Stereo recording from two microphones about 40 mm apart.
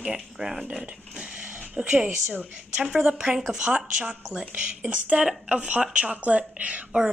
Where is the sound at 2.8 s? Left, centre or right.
Centre.